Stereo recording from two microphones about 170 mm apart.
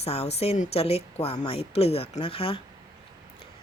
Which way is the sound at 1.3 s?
25° left (ahead or behind).